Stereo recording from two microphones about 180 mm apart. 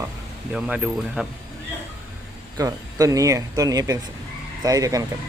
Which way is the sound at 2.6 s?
20° right (ahead or behind).